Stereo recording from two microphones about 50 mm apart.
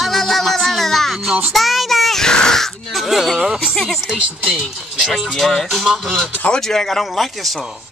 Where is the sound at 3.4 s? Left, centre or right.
Centre.